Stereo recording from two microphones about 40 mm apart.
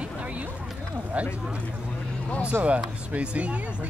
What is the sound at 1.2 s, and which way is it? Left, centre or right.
Speech, right.